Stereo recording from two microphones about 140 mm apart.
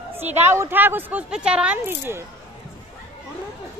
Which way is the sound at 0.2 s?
15° right (ahead or behind).